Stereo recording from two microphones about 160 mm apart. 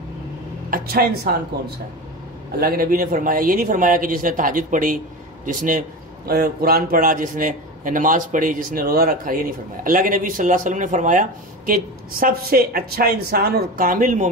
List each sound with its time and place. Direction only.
0.7 s speech: 65° right (ahead or behind)
2.5 s a man's voice: 70° right (ahead or behind); by 14.3 s 55° right (ahead or behind)